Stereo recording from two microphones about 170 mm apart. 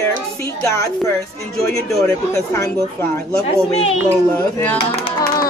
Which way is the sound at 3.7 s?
40° left (ahead or behind).